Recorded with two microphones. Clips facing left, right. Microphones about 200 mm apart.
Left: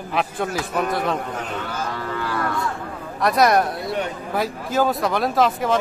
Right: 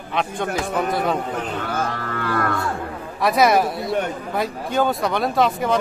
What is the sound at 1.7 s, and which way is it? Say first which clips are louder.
Music: right 2 dB; 55° right (ahead or behind).